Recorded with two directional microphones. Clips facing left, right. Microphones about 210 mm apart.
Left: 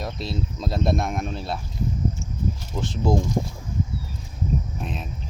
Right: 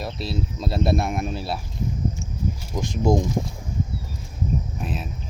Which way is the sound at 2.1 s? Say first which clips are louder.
Even; 15° right (ahead or behind).